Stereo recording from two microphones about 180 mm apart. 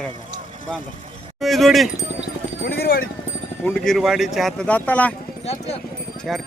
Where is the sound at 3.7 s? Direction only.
Centre (ahead or behind).